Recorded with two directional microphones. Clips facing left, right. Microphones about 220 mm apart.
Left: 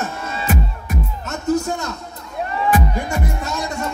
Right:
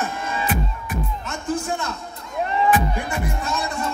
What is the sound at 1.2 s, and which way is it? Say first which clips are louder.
Music: left 7 dB; 40° left (ahead or behind).